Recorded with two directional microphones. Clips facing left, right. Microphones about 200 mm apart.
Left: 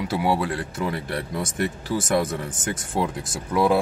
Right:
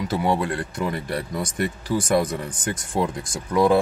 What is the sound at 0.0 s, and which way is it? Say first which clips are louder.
Speech: even; 10° left (ahead or behind).